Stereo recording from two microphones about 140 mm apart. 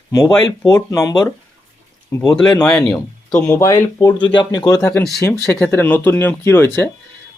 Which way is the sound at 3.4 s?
20° left (ahead or behind).